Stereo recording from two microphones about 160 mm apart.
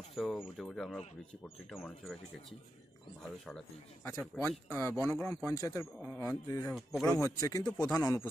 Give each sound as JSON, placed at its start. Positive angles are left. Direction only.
{"t": 0.1, "sound": "speech", "side_deg": 0}
{"t": 3.2, "sound": "speech", "side_deg": 5}
{"t": 4.0, "sound": "speech", "side_deg": 15}